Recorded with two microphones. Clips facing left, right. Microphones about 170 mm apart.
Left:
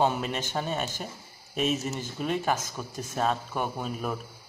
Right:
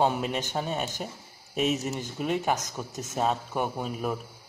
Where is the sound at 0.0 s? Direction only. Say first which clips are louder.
Right 1 dB; 15° right (ahead or behind).